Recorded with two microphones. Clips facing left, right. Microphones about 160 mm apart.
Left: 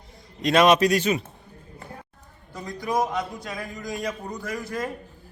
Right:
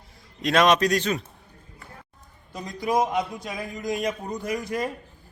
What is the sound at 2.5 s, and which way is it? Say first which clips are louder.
A man's voice: right 2 dB; 20° right (ahead or behind).